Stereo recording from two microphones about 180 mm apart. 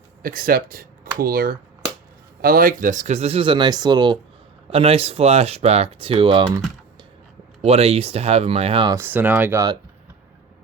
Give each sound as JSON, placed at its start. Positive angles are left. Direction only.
{"t": 0.2, "sound": "speech", "side_deg": -55}
{"t": 7.6, "sound": "speech", "side_deg": -35}
{"t": 9.0, "sound": "speech", "side_deg": -10}